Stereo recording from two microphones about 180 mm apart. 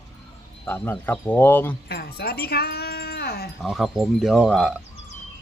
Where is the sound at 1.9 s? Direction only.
60° left (ahead or behind).